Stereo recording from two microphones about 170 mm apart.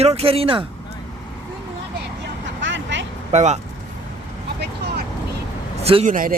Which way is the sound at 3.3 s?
45° right (ahead or behind).